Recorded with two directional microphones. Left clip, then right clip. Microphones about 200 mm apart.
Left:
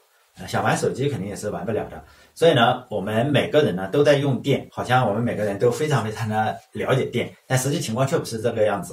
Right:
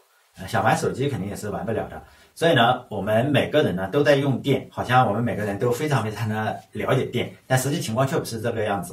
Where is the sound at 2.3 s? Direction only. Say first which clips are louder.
Left 1 dB; centre (ahead or behind).